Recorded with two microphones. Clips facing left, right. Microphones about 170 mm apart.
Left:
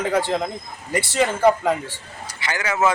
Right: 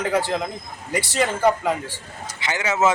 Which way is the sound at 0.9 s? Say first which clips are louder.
Left 1 dB; 10° right (ahead or behind).